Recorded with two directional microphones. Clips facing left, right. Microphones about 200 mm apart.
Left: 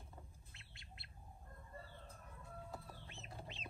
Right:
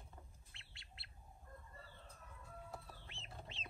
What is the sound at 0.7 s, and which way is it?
Bird, 20° left (ahead or behind).